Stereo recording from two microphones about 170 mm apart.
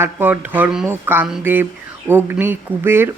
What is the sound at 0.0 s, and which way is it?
Speech, 10° right (ahead or behind).